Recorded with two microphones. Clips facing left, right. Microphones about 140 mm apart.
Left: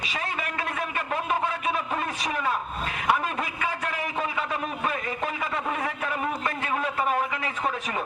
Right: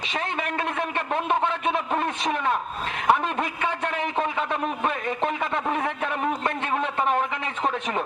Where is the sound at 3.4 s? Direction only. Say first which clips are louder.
Right 3 dB; 5° left (ahead or behind).